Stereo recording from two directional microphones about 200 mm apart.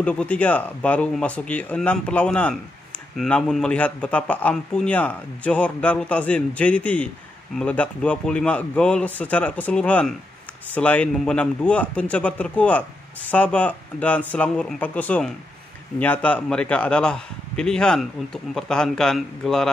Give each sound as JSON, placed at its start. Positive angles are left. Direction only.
{"t": 0.0, "sound": "a man's voice", "side_deg": 5}